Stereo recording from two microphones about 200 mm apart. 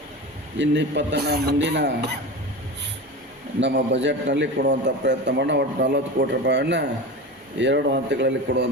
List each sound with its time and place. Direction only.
0.6 s a man's voice: 60° right (ahead or behind)
3.6 s a man's voice: 65° right (ahead or behind)